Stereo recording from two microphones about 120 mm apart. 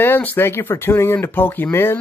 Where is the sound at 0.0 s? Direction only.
15° left (ahead or behind).